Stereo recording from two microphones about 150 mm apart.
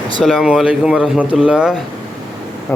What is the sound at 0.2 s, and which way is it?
Speech, centre (ahead or behind).